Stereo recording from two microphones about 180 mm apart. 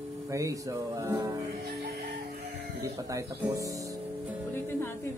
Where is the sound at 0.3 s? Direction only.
15° right (ahead or behind).